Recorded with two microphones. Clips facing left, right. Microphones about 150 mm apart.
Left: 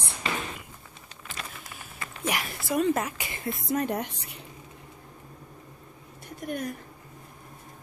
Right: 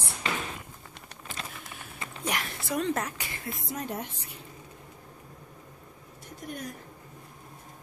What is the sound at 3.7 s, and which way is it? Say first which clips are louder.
Speech: left 8 dB; 65° left (ahead or behind).